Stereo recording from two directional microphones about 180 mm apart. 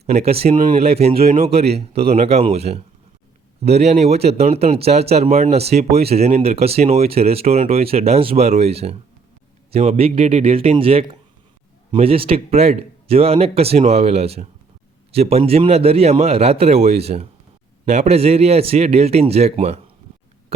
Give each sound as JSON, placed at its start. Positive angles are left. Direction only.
{"t": 0.2, "sound": "speech", "side_deg": -35}